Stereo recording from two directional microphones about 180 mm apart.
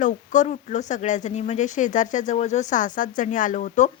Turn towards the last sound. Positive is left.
turn(degrees=45)  # may be behind; listen again after turning